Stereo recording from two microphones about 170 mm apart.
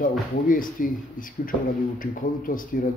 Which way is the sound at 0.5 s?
55° left (ahead or behind).